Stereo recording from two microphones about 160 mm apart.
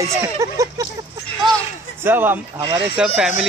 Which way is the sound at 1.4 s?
Centre (ahead or behind).